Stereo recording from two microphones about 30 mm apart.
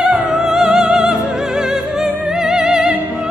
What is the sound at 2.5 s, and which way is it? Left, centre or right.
Music, right.